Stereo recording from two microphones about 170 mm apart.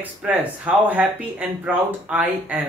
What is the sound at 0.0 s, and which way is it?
Speech, 10° right (ahead or behind).